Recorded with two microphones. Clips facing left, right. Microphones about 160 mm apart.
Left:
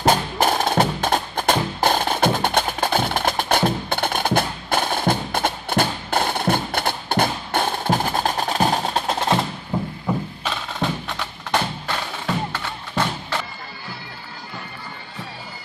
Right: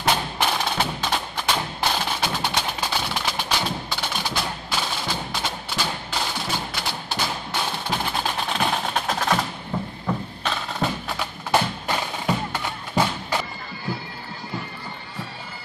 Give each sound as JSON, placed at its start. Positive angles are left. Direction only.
{"t": 0.0, "sound": "music", "side_deg": 45}
{"t": 9.7, "sound": "a sound", "side_deg": 15}
{"t": 10.0, "sound": "music", "side_deg": 0}